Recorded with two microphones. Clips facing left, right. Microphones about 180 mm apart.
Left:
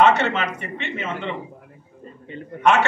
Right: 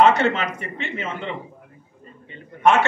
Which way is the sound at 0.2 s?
35° right (ahead or behind).